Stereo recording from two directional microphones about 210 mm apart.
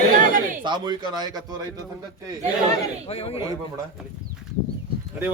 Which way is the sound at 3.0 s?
25° left (ahead or behind).